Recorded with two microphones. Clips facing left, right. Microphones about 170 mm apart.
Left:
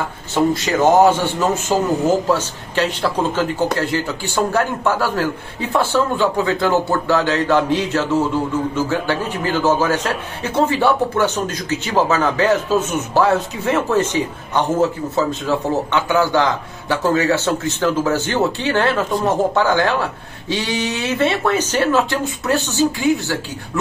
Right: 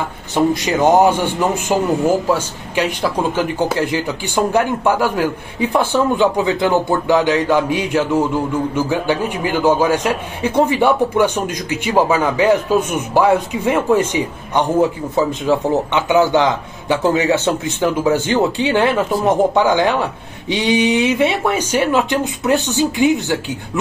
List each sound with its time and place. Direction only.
0.3 s a man's voice: 15° right (ahead or behind)